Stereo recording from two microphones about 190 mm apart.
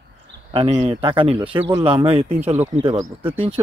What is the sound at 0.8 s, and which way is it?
A man's voice, 30° right (ahead or behind).